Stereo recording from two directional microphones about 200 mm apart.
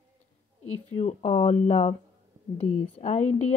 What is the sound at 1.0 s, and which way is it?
Speech, 30° left (ahead or behind).